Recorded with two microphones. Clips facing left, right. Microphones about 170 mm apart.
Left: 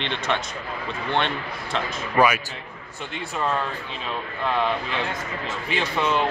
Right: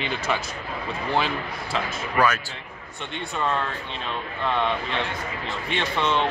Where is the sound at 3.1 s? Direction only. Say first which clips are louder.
Even; 5° left (ahead or behind).